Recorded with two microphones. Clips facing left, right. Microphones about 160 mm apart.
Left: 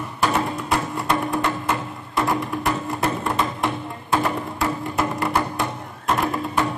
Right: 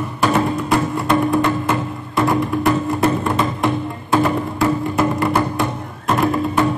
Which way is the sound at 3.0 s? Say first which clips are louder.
Right 3 dB; 5° right (ahead or behind).